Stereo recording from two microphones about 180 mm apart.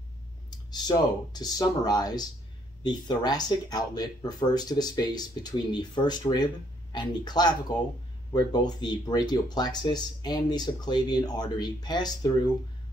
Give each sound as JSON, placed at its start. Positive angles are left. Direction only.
{"t": 0.5, "sound": "speech", "side_deg": 25}